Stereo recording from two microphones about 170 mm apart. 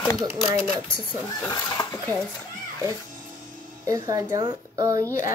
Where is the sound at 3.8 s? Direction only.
20° right (ahead or behind).